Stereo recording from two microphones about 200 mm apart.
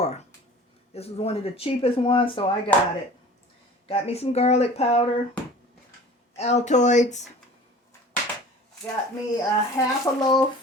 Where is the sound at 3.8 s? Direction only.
30° left (ahead or behind).